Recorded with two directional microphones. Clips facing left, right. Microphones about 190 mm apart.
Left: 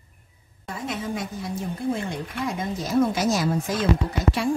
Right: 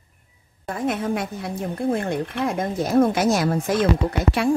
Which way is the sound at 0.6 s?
55° right (ahead or behind).